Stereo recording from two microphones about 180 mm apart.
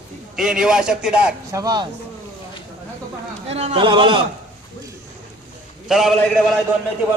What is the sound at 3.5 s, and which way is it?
Speech, 35° right (ahead or behind).